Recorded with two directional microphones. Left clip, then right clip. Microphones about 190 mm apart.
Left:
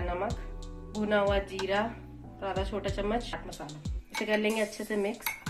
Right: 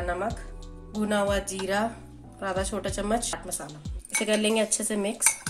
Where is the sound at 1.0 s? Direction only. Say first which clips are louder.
Right 1 dB; 60° right (ahead or behind).